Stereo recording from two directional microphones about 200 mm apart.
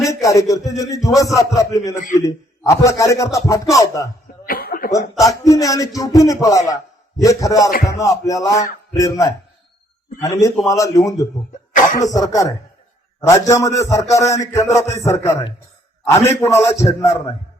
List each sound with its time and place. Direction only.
0.0 s speech: 15° left (ahead or behind)
4.4 s cough: 50° left (ahead or behind)
5.1 s speech: 15° left (ahead or behind)
11.7 s cough: 40° left (ahead or behind)
12.1 s speech: 15° left (ahead or behind)